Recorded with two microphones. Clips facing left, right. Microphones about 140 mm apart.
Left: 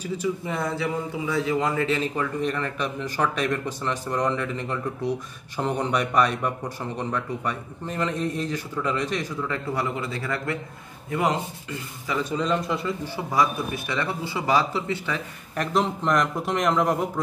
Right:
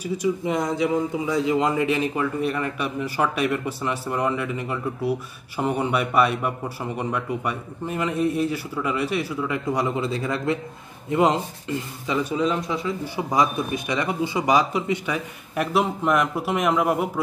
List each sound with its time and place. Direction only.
0.0 s speech: 15° right (ahead or behind)
12.2 s a man's voice: 10° right (ahead or behind)
13.0 s speech: 15° right (ahead or behind)